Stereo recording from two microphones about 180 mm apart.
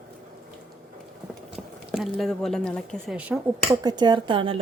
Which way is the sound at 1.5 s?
Centre (ahead or behind).